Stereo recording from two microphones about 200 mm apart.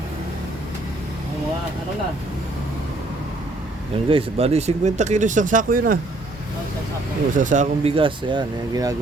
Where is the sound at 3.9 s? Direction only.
30° right (ahead or behind).